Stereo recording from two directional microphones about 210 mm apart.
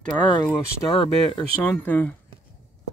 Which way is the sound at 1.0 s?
25° left (ahead or behind).